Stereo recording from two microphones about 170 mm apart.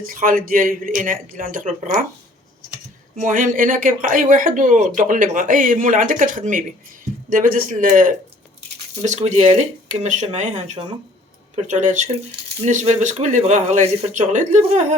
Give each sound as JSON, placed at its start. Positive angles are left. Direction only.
{"t": 0.0, "sound": "a man's voice", "side_deg": -55}
{"t": 3.2, "sound": "a man's voice", "side_deg": -50}
{"t": 9.0, "sound": "speech", "side_deg": -40}